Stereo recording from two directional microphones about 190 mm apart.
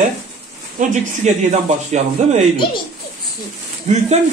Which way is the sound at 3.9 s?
40° right (ahead or behind).